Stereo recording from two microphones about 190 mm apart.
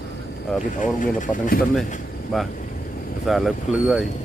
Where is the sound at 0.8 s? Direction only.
45° left (ahead or behind).